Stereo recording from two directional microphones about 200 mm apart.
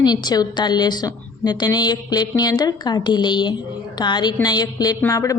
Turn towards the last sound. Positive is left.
turn(degrees=15)  # may be behind; listen again after turning